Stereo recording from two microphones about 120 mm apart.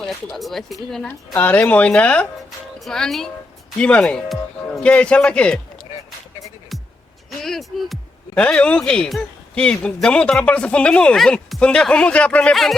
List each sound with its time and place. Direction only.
0.0 s speech: centre (ahead or behind)
7.3 s speech: centre (ahead or behind)